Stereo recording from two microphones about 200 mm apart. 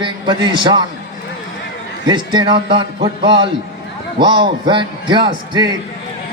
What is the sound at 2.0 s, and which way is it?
A man's voice, 20° right (ahead or behind).